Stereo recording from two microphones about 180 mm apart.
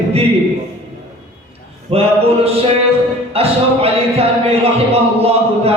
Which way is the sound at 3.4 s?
35° right (ahead or behind).